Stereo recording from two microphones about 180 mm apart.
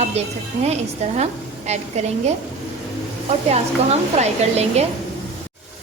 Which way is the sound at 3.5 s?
35° right (ahead or behind).